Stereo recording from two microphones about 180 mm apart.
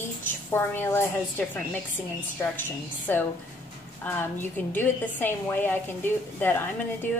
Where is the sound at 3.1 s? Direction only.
10° left (ahead or behind).